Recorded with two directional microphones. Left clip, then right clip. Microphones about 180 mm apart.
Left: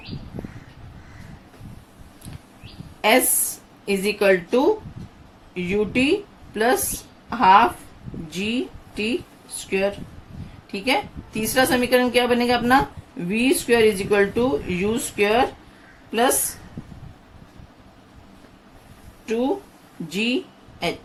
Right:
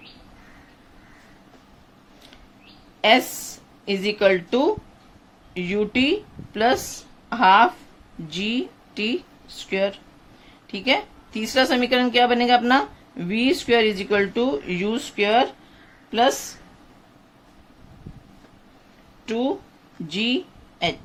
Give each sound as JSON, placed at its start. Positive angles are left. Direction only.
{"t": 3.0, "sound": "a woman's voice", "side_deg": -45}
{"t": 19.2, "sound": "speech", "side_deg": -45}